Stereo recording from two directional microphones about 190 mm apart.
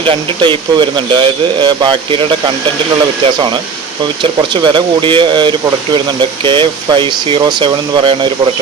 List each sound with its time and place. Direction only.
0.0 s speech: 25° right (ahead or behind)
4.2 s speech: 25° right (ahead or behind)